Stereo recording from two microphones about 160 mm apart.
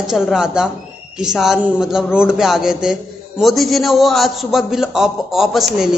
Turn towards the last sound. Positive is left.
turn(degrees=0)  # may be behind; listen again after turning